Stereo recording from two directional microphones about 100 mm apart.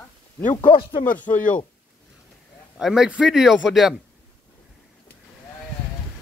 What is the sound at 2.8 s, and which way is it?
Speech, 5° right (ahead or behind).